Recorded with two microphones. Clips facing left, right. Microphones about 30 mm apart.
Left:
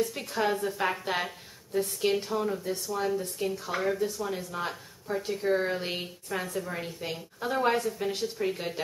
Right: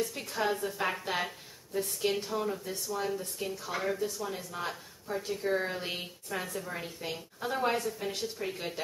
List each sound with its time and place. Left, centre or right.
0.1 s speech: centre